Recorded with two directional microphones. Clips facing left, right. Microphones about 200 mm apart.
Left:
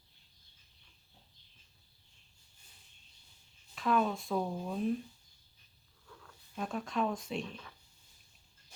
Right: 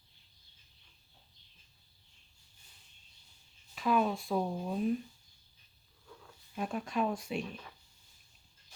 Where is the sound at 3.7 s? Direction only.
5° right (ahead or behind).